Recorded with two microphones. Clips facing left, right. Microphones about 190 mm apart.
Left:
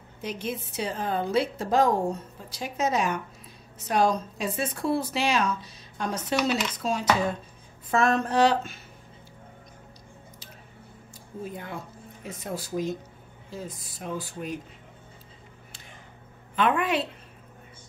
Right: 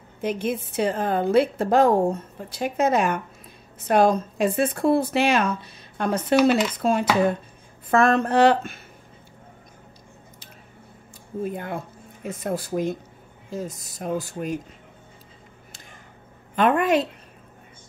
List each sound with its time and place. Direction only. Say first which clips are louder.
0.2 s speech: right 7 dB; 55° right (ahead or behind)
11.4 s speech: right 7 dB; 55° right (ahead or behind)
13.5 s speech: right 6 dB; 45° right (ahead or behind)
16.5 s speech: right 5 dB; 45° right (ahead or behind)